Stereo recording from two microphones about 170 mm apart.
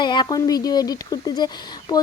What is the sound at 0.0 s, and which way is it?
Speech, 25° left (ahead or behind).